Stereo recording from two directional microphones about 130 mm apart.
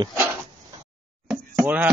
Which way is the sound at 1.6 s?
10° right (ahead or behind).